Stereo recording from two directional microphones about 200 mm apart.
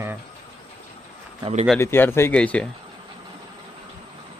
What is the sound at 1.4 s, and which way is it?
Speech, 30° right (ahead or behind).